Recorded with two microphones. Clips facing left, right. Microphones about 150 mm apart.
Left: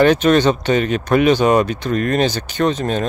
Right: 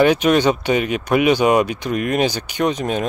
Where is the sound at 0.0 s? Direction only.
10° right (ahead or behind).